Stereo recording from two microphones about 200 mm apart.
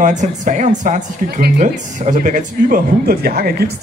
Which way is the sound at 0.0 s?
40° right (ahead or behind).